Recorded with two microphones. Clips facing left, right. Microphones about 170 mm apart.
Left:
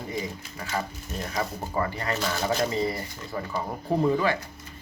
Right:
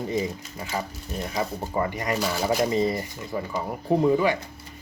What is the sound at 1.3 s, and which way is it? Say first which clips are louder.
Speech: right 2 dB; 20° right (ahead or behind).